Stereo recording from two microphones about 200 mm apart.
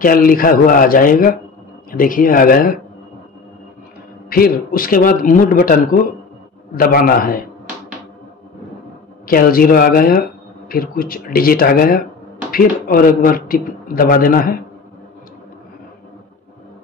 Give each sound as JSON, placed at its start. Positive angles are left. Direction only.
{"t": 0.0, "sound": "a man's voice", "side_deg": 45}
{"t": 4.3, "sound": "a man's voice", "side_deg": 45}
{"t": 9.3, "sound": "a man's voice", "side_deg": 45}